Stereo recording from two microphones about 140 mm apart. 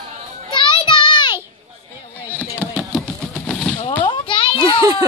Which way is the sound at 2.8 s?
5° left (ahead or behind).